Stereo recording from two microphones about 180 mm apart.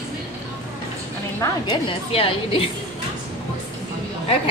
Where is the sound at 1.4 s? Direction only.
25° left (ahead or behind).